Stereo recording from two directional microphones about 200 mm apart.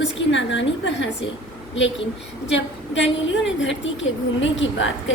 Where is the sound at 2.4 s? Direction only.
65° left (ahead or behind).